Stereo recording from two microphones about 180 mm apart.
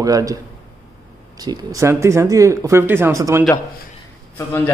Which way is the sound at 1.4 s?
20° right (ahead or behind).